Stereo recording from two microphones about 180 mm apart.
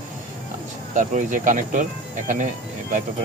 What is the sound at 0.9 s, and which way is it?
Speech, 45° right (ahead or behind).